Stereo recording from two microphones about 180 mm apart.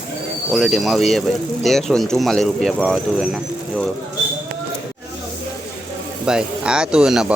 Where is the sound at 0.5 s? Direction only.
Centre (ahead or behind).